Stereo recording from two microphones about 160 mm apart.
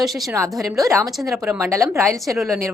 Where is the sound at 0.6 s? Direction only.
20° right (ahead or behind).